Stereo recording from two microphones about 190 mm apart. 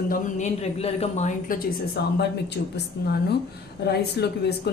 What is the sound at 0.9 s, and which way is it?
Speech, 35° left (ahead or behind).